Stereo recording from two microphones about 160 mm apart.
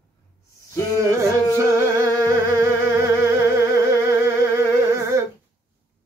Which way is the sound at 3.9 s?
15° right (ahead or behind).